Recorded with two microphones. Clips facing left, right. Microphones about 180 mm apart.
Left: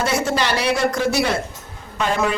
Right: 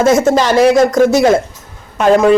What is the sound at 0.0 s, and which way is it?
A man's voice, 45° right (ahead or behind).